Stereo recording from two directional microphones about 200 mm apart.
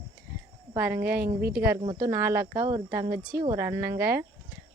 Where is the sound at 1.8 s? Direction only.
25° right (ahead or behind).